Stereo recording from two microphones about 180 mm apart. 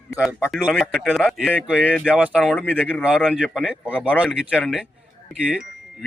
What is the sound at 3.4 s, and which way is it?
Speech, 5° right (ahead or behind).